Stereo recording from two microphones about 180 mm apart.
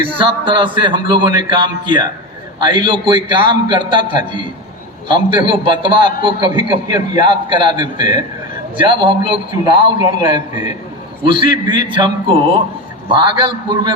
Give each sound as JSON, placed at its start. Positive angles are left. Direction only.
{"t": 0.0, "sound": "a man's voice", "side_deg": -30}
{"t": 13.1, "sound": "a man's voice", "side_deg": -25}